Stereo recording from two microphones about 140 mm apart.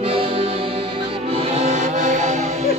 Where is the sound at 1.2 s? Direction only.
45° right (ahead or behind).